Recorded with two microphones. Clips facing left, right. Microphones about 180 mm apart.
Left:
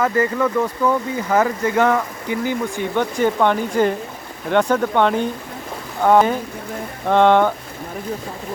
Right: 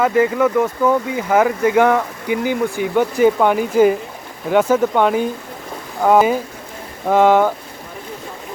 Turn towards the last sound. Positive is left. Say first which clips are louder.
# right 1 dB
turn(degrees=-5)  # may be behind; listen again after turning